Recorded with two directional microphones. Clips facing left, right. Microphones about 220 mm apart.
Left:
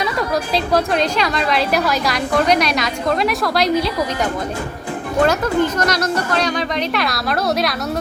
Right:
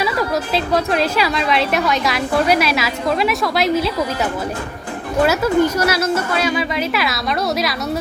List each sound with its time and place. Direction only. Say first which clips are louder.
0.0 s a woman's voice: right 1 dB; centre (ahead or behind)
5.2 s a woman's voice: right 2 dB; 10° right (ahead or behind)